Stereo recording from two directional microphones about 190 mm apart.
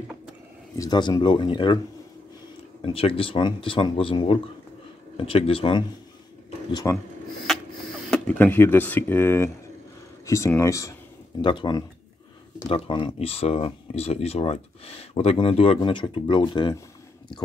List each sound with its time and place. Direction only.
0.7 s speech: 20° left (ahead or behind)
2.8 s speech: 30° left (ahead or behind)
8.1 s speech: 10° left (ahead or behind)